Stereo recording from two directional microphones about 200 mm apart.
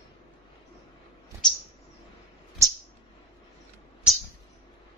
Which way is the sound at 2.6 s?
15° right (ahead or behind).